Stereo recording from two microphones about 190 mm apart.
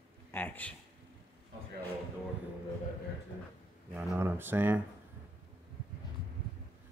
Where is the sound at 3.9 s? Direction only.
10° right (ahead or behind).